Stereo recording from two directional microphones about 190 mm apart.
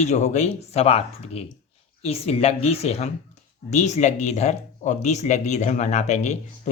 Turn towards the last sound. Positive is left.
turn(degrees=35)  # may be behind; listen again after turning